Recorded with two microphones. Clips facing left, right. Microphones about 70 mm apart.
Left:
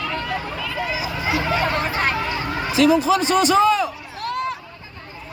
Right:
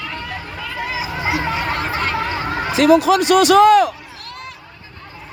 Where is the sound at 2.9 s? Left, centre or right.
Right.